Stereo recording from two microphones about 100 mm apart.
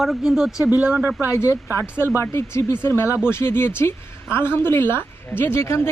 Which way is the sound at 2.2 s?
25° left (ahead or behind).